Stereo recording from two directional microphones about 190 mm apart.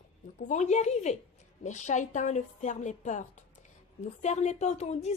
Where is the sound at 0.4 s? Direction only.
40° left (ahead or behind).